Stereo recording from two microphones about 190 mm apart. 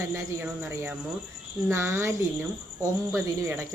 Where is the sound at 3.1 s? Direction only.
15° right (ahead or behind).